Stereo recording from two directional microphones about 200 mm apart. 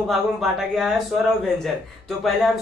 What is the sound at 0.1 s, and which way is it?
Speech, centre (ahead or behind).